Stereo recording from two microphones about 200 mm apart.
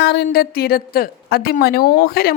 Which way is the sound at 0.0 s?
55° left (ahead or behind).